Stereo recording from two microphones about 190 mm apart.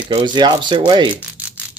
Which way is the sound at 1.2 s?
5° right (ahead or behind).